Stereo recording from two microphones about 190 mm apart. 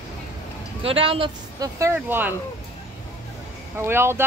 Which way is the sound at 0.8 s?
30° right (ahead or behind).